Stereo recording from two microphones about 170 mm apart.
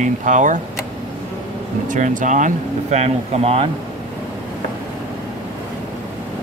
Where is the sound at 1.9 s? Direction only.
50° right (ahead or behind).